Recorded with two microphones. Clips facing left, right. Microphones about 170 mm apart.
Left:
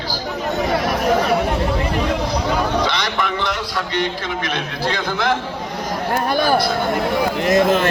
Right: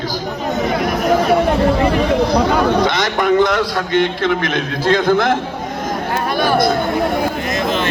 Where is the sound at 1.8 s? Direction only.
60° right (ahead or behind).